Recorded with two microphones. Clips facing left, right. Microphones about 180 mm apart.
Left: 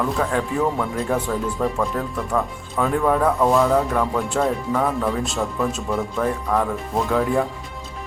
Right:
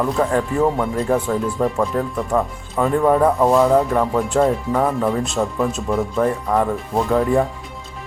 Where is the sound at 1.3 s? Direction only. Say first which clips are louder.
Right 3 dB; 15° right (ahead or behind).